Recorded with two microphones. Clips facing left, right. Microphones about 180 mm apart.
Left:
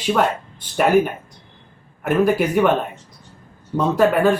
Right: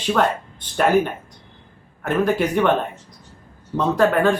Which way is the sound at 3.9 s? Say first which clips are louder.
Left 1 dB; 10° left (ahead or behind).